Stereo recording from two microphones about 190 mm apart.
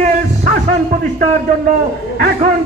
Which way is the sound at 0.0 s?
40° right (ahead or behind).